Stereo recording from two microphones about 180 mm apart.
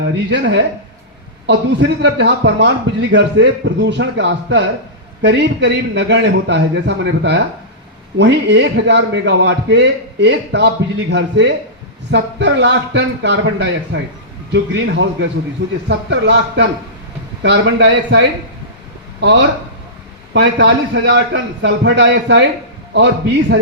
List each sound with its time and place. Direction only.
0.0 s a man's voice: 75° right (ahead or behind)
14.5 s a man's voice: 90° right
15.9 s a man's voice: 75° right (ahead or behind)